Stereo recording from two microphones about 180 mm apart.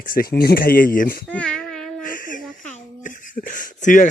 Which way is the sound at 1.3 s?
5° left (ahead or behind).